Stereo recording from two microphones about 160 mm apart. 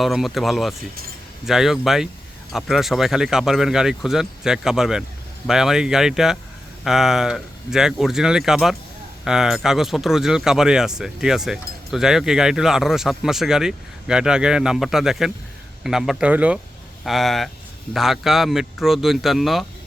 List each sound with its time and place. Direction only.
0.0 s speech: centre (ahead or behind)